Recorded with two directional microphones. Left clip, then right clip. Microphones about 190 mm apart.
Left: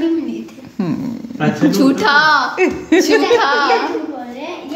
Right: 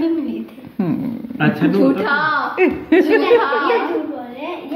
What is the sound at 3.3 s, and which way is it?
Female singing, 90° left.